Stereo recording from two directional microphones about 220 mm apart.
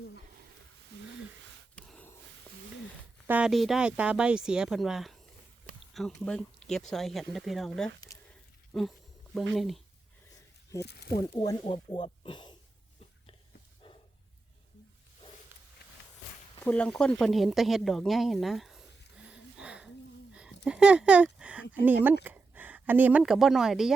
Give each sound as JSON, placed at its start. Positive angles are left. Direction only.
{"t": 1.7, "sound": "gasp", "side_deg": 5}
{"t": 3.2, "sound": "speech", "side_deg": -5}
{"t": 8.1, "sound": "a sound", "side_deg": 15}
{"t": 8.7, "sound": "speech", "side_deg": 0}
{"t": 10.8, "sound": "speech", "side_deg": 50}
{"t": 11.3, "sound": "speech", "side_deg": 20}
{"t": 13.8, "sound": "dog", "side_deg": 25}
{"t": 16.6, "sound": "speech", "side_deg": 5}
{"t": 19.3, "sound": "a sound", "side_deg": -5}
{"t": 20.7, "sound": "speech", "side_deg": -5}